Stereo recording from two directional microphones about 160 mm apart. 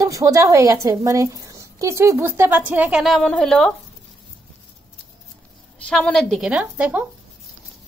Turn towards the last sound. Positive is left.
turn(degrees=-10)  # may be behind; listen again after turning